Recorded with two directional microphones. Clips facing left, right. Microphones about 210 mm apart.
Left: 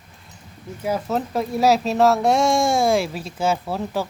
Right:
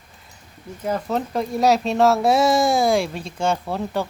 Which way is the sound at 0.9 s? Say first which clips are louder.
Even; 5° left (ahead or behind).